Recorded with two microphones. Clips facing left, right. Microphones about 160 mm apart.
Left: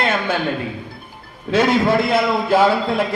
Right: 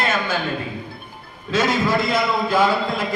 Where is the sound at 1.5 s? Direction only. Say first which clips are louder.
Left 4 dB; 60° left (ahead or behind).